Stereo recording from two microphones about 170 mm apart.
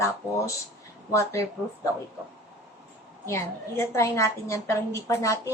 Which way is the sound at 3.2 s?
15° left (ahead or behind).